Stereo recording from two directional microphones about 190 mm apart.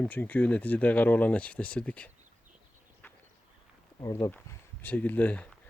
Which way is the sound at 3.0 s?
10° left (ahead or behind).